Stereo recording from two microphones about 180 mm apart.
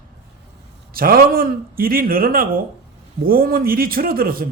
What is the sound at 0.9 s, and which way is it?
A man's voice, 55° right (ahead or behind).